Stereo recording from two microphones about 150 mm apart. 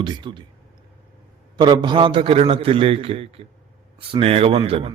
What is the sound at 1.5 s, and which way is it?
Speech, 30° right (ahead or behind).